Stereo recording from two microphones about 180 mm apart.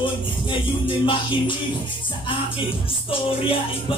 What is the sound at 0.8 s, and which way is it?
Music, 25° left (ahead or behind).